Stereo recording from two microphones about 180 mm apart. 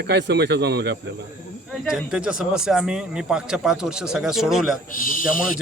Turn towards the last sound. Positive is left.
turn(degrees=50)  # may be behind; listen again after turning